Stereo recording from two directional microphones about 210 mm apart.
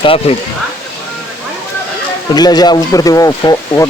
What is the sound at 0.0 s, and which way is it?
Speech, 25° left (ahead or behind).